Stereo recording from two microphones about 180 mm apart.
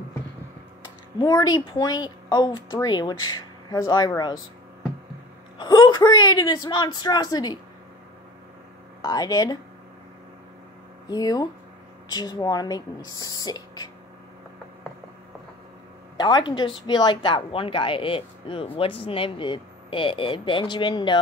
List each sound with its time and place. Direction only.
1.2 s a woman's voice: 20° left (ahead or behind)
5.6 s a woman's voice: 25° left (ahead or behind)
9.0 s a woman's voice: 20° left (ahead or behind)
11.1 s a woman's voice: 20° left (ahead or behind)
16.2 s a woman's voice: 25° left (ahead or behind)